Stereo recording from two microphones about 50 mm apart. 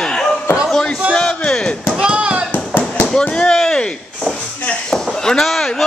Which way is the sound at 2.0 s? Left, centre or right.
Right.